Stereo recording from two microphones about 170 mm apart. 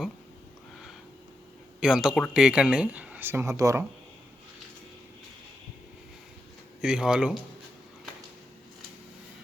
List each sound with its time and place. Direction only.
1.8 s speech: 5° right (ahead or behind)
6.8 s speech: 5° right (ahead or behind)